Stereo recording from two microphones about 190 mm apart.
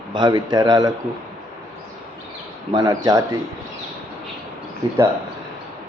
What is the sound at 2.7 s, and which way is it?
Speech, 20° right (ahead or behind).